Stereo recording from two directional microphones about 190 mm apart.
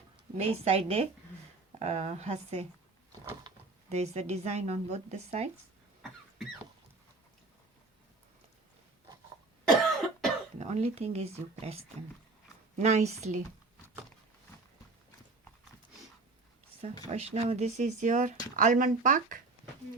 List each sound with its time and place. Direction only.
0.4 s speech: 30° right (ahead or behind)
3.8 s speech: 35° right (ahead or behind)
9.6 s cough: centre (ahead or behind)
10.6 s speech: 35° right (ahead or behind)
17.1 s speech: 35° right (ahead or behind)